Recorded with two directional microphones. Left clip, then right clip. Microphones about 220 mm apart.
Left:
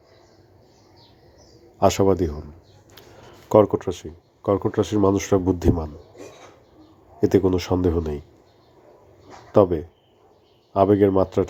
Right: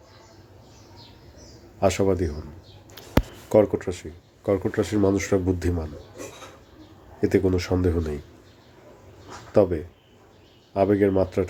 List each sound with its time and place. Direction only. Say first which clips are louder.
1.8 s a man's voice: left 4 dB; 25° left (ahead or behind)
3.5 s a man's voice: left 3 dB; 20° left (ahead or behind)
7.2 s a man's voice: left 3 dB; 20° left (ahead or behind)
9.5 s a man's voice: left 3 dB; 20° left (ahead or behind)